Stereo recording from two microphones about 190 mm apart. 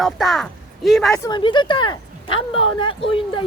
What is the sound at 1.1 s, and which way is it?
Speech, 20° left (ahead or behind).